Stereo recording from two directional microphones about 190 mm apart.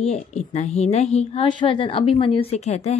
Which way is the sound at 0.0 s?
35° left (ahead or behind).